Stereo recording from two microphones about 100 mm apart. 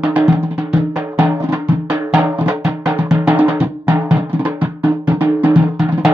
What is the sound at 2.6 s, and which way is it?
Music, 10° right (ahead or behind).